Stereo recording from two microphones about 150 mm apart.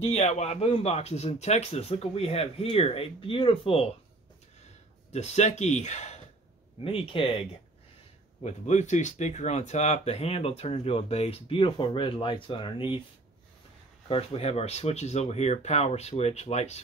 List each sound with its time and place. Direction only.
0.0 s speech: 45° left (ahead or behind)
5.1 s speech: 45° left (ahead or behind)
6.8 s speech: 35° left (ahead or behind)
8.4 s speech: 50° left (ahead or behind)
14.0 s speech: 40° left (ahead or behind)